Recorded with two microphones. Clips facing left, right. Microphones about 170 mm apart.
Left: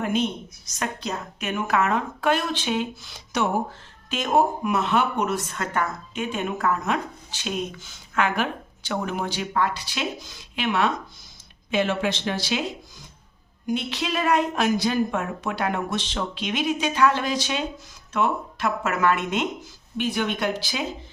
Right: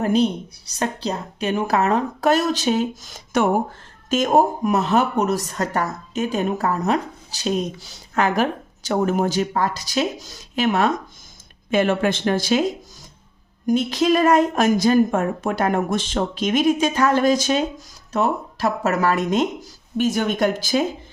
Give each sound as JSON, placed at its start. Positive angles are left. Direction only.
{"t": 0.0, "sound": "speech", "side_deg": -35}
{"t": 13.7, "sound": "speech", "side_deg": -45}